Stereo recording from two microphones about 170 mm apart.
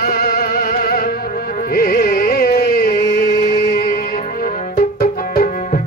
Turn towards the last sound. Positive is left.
turn(degrees=60)  # may be behind; listen again after turning